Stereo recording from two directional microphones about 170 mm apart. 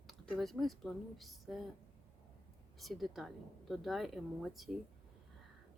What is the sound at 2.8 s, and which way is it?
A woman's voice, centre (ahead or behind).